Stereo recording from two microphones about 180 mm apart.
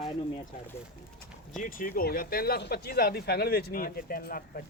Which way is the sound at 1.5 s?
50° left (ahead or behind).